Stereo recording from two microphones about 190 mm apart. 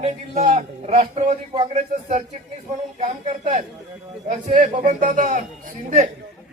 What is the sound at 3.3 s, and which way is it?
A man's voice, 40° right (ahead or behind).